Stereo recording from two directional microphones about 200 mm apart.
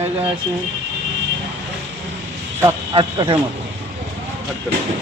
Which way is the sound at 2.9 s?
25° right (ahead or behind).